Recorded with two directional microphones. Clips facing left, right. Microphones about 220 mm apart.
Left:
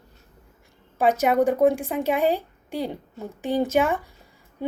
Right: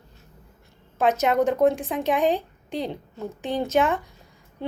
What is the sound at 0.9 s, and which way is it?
A woman's voice, 10° left (ahead or behind).